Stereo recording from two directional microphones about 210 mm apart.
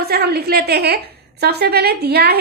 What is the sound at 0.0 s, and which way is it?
A woman's voice, 50° right (ahead or behind).